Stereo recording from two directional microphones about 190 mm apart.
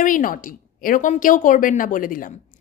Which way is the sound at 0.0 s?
45° left (ahead or behind).